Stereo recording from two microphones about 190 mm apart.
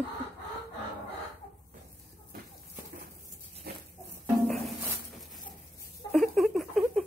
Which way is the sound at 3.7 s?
55° right (ahead or behind).